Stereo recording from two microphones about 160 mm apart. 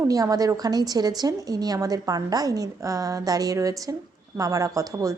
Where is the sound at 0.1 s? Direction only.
20° right (ahead or behind).